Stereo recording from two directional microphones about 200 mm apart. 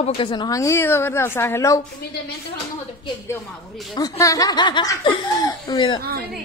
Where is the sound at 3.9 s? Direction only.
15° left (ahead or behind).